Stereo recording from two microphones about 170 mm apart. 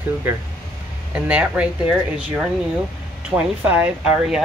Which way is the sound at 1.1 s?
10° right (ahead or behind).